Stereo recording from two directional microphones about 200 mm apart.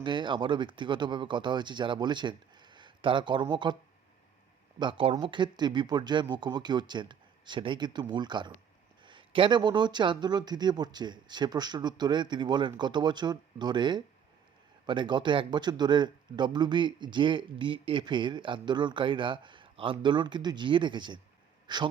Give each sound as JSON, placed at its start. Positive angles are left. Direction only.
{"t": 0.0, "sound": "speech", "side_deg": -25}
{"t": 4.8, "sound": "speech", "side_deg": -25}